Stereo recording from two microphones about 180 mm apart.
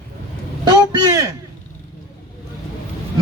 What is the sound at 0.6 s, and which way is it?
Speech, 20° right (ahead or behind).